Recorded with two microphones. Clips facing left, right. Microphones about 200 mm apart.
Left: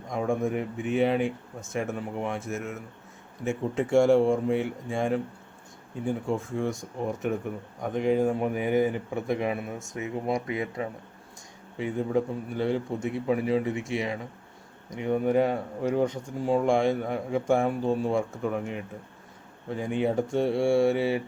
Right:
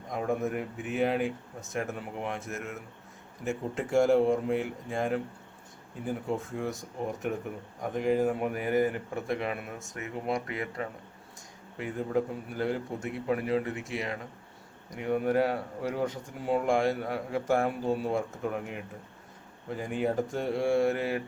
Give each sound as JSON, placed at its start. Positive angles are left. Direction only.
{"t": 0.1, "sound": "speech", "side_deg": 0}
{"t": 9.4, "sound": "speech", "side_deg": 15}
{"t": 11.8, "sound": "speech", "side_deg": 0}